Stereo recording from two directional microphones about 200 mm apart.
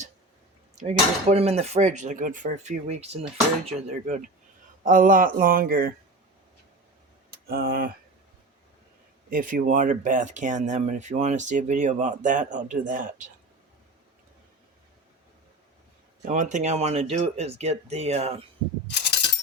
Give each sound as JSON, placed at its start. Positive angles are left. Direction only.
{"t": 0.8, "sound": "speech", "side_deg": -30}
{"t": 7.3, "sound": "a sound", "side_deg": -50}
{"t": 9.3, "sound": "speech", "side_deg": -40}
{"t": 16.2, "sound": "speech", "side_deg": -40}
{"t": 18.9, "sound": "coin", "side_deg": 60}